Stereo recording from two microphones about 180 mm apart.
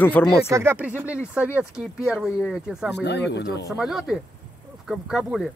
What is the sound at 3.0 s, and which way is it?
Speech, 70° left (ahead or behind).